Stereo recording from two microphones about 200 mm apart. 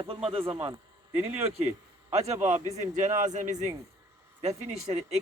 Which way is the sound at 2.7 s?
35° right (ahead or behind).